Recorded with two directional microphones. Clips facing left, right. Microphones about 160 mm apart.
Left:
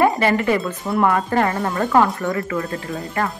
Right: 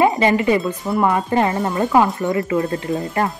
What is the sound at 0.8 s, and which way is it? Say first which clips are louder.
Speech: left 1 dB; 5° right (ahead or behind).